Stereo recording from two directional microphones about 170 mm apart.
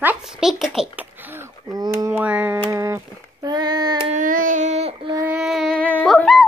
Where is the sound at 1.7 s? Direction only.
20° right (ahead or behind).